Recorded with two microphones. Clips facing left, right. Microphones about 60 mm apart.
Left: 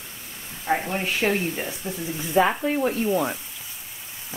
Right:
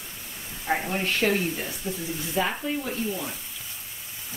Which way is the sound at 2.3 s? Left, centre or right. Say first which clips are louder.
Left 7 dB; left.